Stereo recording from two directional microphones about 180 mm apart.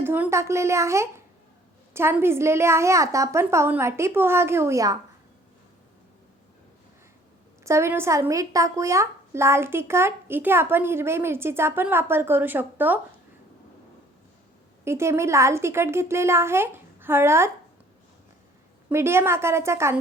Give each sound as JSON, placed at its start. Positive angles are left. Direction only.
{"t": 0.0, "sound": "speech", "side_deg": -10}
{"t": 7.6, "sound": "speech", "side_deg": -15}
{"t": 14.8, "sound": "speech", "side_deg": -15}
{"t": 18.9, "sound": "speech", "side_deg": -15}